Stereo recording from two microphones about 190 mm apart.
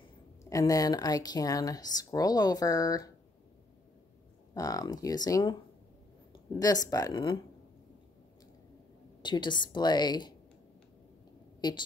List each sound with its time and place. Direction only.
0.4 s speech: 15° left (ahead or behind)
4.6 s speech: 20° left (ahead or behind)
9.2 s speech: 25° left (ahead or behind)
11.6 s a woman's voice: 20° left (ahead or behind)